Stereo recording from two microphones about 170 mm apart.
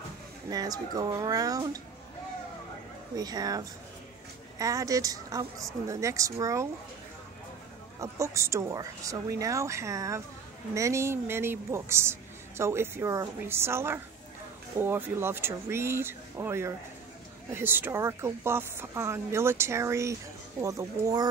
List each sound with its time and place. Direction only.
0.5 s speech: 20° right (ahead or behind)
3.2 s speech: 20° right (ahead or behind)
8.0 s a woman's voice: 15° right (ahead or behind)